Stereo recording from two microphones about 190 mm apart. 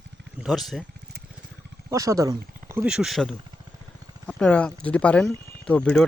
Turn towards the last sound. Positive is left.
turn(degrees=5)  # may be behind; listen again after turning